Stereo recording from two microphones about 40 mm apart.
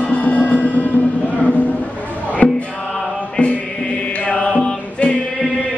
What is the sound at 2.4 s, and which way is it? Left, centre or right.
Music, left.